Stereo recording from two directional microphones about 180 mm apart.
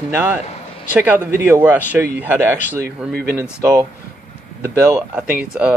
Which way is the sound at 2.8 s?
60° right (ahead or behind).